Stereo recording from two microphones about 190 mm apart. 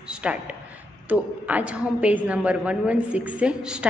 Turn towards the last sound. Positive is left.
turn(degrees=-5)  # may be behind; listen again after turning